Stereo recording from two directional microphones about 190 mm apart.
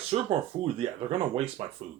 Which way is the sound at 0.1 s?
30° right (ahead or behind).